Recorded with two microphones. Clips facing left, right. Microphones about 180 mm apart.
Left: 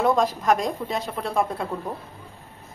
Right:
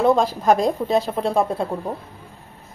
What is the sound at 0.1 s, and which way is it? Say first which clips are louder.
A woman's voice: right 4 dB; 30° right (ahead or behind).